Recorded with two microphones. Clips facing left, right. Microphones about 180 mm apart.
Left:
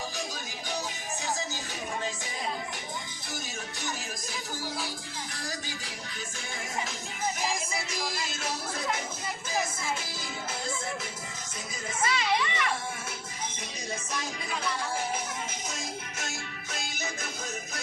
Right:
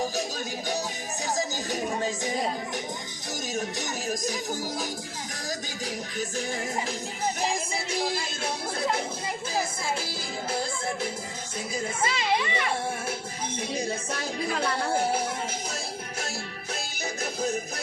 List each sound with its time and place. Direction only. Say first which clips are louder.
1.7 s music: right 7 dB; 40° right (ahead or behind)
3.5 s music: right 9 dB; 40° right (ahead or behind)
7.3 s speech: right 3 dB; 30° right (ahead or behind)
9.5 s music: right 1 dB; 30° right (ahead or behind)
12.0 s speech: even; 30° right (ahead or behind)
14.1 s music: right 5 dB; 60° right (ahead or behind)
16.7 s music: right 2 dB; 35° right (ahead or behind)